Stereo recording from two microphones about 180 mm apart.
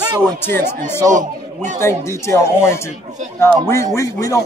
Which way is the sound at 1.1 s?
45° right (ahead or behind).